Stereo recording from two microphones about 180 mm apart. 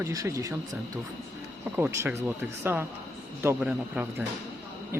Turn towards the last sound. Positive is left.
turn(degrees=-10)  # may be behind; listen again after turning